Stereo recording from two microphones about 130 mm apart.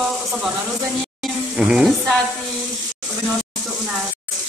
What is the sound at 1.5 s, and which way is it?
Speech, 5° right (ahead or behind).